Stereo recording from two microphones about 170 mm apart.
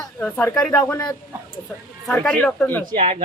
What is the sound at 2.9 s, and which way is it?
Speech, 40° right (ahead or behind).